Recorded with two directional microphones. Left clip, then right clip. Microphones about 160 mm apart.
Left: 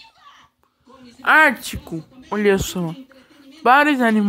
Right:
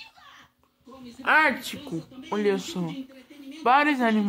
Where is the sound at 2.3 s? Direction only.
30° left (ahead or behind).